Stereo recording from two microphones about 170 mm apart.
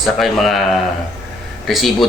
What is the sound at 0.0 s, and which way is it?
Speech, centre (ahead or behind).